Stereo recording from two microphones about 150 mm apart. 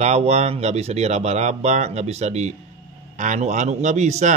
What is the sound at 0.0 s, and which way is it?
Speech, 45° right (ahead or behind).